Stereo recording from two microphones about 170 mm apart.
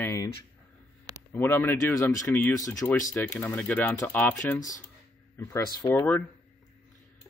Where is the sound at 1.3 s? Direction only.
10° left (ahead or behind).